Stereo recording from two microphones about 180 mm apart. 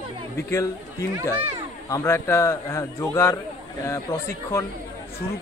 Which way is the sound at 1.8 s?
15° left (ahead or behind).